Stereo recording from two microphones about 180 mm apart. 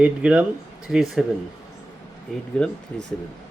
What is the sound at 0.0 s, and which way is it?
Speech, 5° right (ahead or behind).